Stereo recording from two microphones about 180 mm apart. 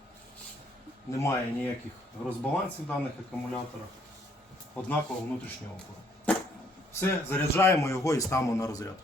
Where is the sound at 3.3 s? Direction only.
10° left (ahead or behind).